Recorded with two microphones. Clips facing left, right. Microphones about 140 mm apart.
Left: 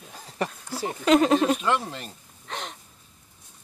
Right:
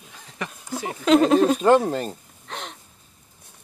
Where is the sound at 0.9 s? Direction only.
Centre (ahead or behind).